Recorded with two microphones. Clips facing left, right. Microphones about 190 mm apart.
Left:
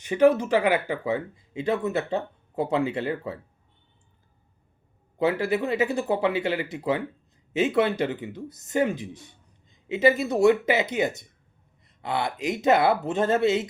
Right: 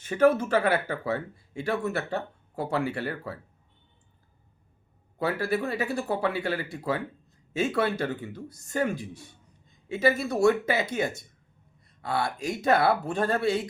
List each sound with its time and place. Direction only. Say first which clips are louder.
0.0 s speech: left 2 dB; 15° left (ahead or behind)
5.2 s speech: left 4 dB; 20° left (ahead or behind)